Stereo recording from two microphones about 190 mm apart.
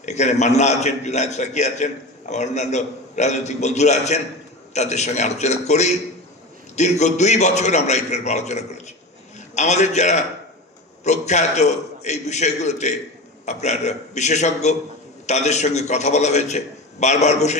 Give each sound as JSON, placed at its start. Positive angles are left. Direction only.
{"t": 0.0, "sound": "a man's voice", "side_deg": 35}